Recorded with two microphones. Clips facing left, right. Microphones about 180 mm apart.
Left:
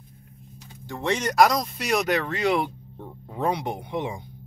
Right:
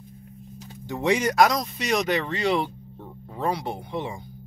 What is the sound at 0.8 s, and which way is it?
Speech, 15° right (ahead or behind).